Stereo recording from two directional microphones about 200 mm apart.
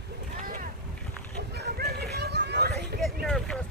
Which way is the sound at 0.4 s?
45° right (ahead or behind).